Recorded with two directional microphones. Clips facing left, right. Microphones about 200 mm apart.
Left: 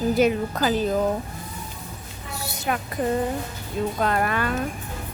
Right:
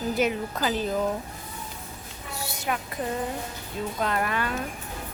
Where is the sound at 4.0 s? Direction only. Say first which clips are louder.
Left 2 dB; 50° left (ahead or behind).